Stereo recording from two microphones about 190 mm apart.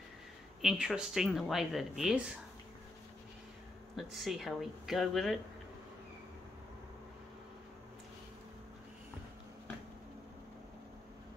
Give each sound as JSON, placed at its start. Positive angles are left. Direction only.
{"t": 0.6, "sound": "speech", "side_deg": 0}
{"t": 3.9, "sound": "speech", "side_deg": 0}